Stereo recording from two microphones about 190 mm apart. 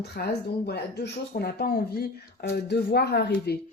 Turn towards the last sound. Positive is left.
turn(degrees=55)  # may be behind; listen again after turning